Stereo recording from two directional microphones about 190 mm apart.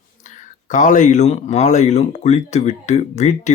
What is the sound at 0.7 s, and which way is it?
Speech, 40° left (ahead or behind).